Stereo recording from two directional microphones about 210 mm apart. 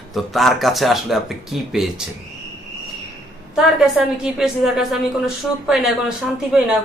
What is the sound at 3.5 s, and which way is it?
A woman's voice, 5° right (ahead or behind).